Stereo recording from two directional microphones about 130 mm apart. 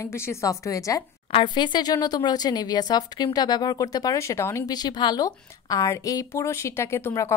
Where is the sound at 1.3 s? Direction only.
35° left (ahead or behind).